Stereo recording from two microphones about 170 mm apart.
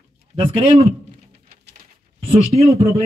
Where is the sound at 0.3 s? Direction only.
45° right (ahead or behind).